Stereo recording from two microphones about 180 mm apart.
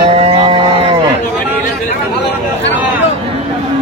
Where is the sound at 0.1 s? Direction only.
35° right (ahead or behind).